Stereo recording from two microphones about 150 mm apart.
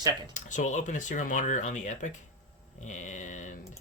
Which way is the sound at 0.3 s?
55° left (ahead or behind).